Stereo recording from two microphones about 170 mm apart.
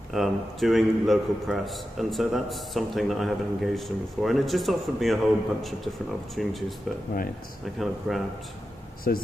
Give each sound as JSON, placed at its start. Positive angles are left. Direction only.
{"t": 0.1, "sound": "a man's voice", "side_deg": 0}
{"t": 7.6, "sound": "a man's voice", "side_deg": 0}
{"t": 9.1, "sound": "speech", "side_deg": 60}